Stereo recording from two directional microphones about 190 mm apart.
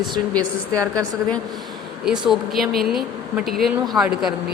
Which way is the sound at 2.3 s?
Centre (ahead or behind).